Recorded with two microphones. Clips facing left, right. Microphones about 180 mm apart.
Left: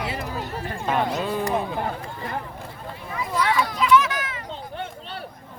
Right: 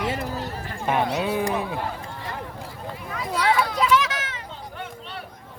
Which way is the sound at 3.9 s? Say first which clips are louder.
Left 3 dB; 90° right.